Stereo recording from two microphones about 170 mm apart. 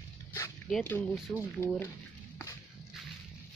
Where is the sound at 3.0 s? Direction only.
Centre (ahead or behind).